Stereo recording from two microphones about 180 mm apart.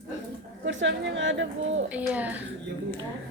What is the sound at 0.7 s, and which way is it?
A woman's voice, 90° right.